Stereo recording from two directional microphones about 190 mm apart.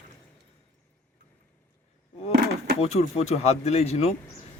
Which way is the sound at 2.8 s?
35° left (ahead or behind).